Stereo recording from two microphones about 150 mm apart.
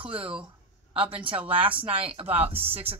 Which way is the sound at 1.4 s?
10° right (ahead or behind).